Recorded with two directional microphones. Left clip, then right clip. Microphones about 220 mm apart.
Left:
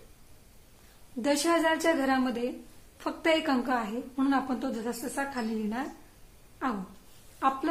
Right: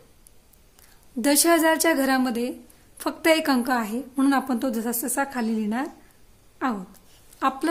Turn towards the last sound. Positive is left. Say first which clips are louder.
# right 3 dB
turn(degrees=-55)  # may be behind; listen again after turning